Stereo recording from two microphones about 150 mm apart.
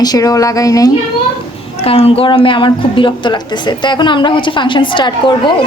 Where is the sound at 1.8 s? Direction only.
40° left (ahead or behind).